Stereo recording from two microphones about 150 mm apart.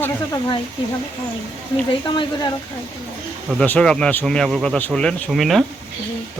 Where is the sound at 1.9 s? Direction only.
30° left (ahead or behind).